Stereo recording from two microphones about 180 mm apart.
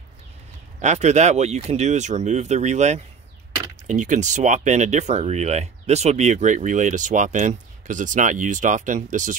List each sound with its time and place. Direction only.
0.7 s speech: 40° right (ahead or behind)